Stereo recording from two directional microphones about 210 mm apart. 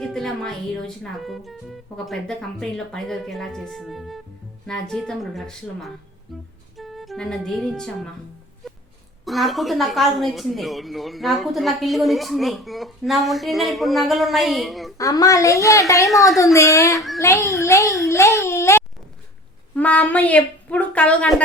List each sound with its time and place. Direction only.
0.0 s a woman's voice: centre (ahead or behind)
6.3 s music: centre (ahead or behind)
6.7 s speech: centre (ahead or behind)
8.6 s a sound: centre (ahead or behind)
9.2 s speech: centre (ahead or behind)
14.9 s a woman's voice: 15° left (ahead or behind)
18.1 s a sound: 15° left (ahead or behind)
19.7 s a woman's voice: 5° left (ahead or behind)